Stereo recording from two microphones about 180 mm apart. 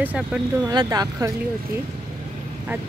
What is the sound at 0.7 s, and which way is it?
Speech, 20° right (ahead or behind).